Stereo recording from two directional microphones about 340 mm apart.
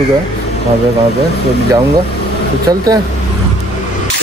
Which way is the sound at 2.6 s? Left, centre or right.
Centre.